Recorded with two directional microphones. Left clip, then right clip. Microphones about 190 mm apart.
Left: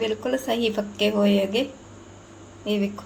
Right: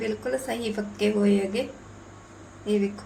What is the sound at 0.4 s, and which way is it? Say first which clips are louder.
Speech: left 6 dB; 45° left (ahead or behind).